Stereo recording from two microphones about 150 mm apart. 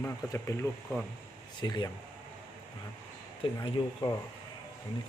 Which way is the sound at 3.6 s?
30° left (ahead or behind).